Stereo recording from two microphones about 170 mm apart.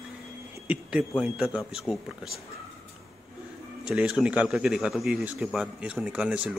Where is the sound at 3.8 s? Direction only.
5° right (ahead or behind).